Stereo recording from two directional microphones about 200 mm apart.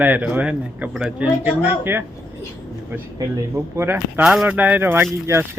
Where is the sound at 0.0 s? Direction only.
10° right (ahead or behind).